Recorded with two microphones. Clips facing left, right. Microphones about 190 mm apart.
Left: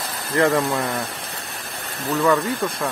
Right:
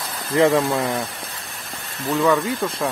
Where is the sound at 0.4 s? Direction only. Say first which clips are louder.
Right 2 dB; 20° right (ahead or behind).